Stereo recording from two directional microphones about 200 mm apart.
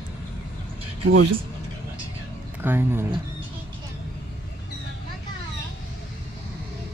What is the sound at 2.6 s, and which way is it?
Speech, 10° right (ahead or behind).